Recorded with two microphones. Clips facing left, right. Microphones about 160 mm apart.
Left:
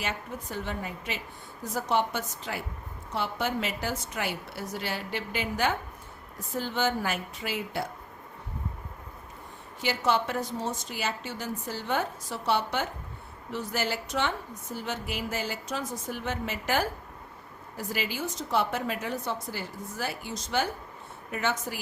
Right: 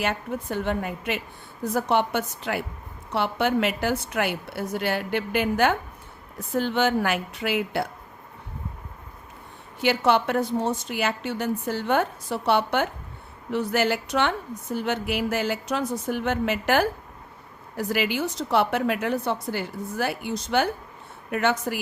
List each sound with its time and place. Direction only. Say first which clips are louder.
0.0 s a woman's voice: right 7 dB; 60° right (ahead or behind)
9.8 s a woman's voice: right 6 dB; 65° right (ahead or behind)